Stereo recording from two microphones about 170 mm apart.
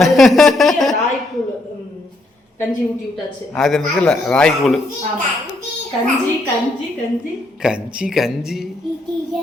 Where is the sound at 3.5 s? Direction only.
Centre (ahead or behind).